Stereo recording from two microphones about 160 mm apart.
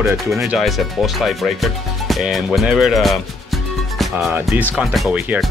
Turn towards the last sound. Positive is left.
turn(degrees=-5)  # may be behind; listen again after turning